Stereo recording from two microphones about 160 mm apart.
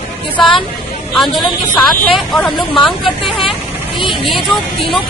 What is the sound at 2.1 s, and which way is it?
Speech, centre (ahead or behind).